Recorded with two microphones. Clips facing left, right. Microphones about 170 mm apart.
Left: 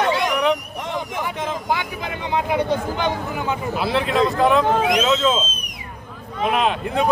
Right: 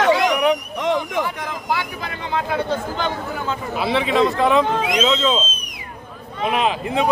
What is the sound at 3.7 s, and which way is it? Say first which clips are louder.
Speech: right 2 dB; centre (ahead or behind).